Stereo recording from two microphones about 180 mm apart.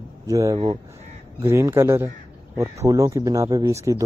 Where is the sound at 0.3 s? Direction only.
20° right (ahead or behind).